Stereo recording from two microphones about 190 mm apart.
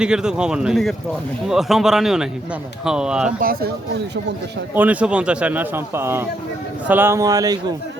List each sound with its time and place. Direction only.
0.0 s a man's voice: 5° right (ahead or behind)
3.4 s speech: 50° right (ahead or behind)
4.7 s a man's voice: 10° right (ahead or behind)